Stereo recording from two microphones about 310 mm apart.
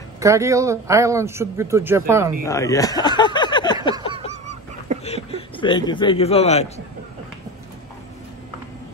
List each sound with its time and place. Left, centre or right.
0.2 s speech: centre
2.4 s speech: centre
5.0 s speech: centre